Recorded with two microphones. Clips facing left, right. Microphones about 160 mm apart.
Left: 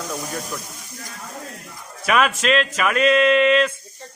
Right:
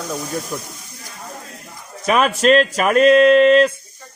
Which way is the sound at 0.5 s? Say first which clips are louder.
Right 4 dB; 20° right (ahead or behind).